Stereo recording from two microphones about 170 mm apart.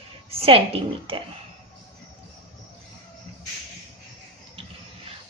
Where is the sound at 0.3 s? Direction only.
35° right (ahead or behind).